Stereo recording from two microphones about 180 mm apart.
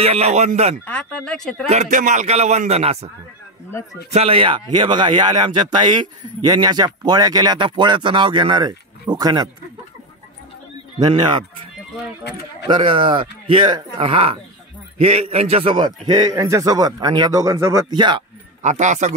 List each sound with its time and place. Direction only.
0.0 s a man's voice: 35° right (ahead or behind)
0.8 s speech: 5° left (ahead or behind)
1.7 s a man's voice: 40° right (ahead or behind)
4.1 s speech: 35° right (ahead or behind)
11.0 s speech: 25° right (ahead or behind)
18.6 s a man's voice: 40° right (ahead or behind)